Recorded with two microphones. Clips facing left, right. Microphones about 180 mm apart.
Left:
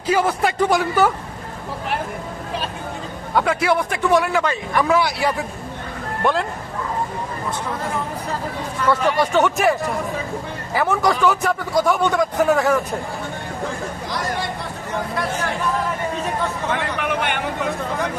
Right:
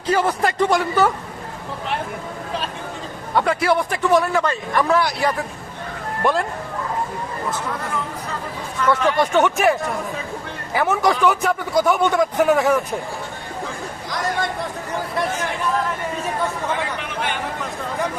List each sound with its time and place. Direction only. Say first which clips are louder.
0.1 s a man's voice: even; 5° left (ahead or behind)
3.3 s a man's voice: even; centre (ahead or behind)
8.9 s a man's voice: even; centre (ahead or behind)
17.0 s a sound: left 4 dB; 60° left (ahead or behind)